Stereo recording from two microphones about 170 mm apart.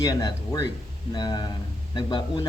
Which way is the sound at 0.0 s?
20° left (ahead or behind).